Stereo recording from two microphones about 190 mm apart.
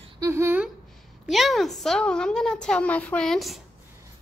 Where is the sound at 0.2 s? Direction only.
15° right (ahead or behind).